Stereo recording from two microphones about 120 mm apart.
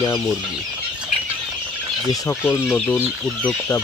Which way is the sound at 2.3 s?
20° left (ahead or behind).